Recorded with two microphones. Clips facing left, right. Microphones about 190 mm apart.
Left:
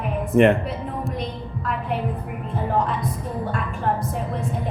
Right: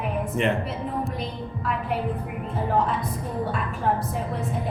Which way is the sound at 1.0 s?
Centre (ahead or behind).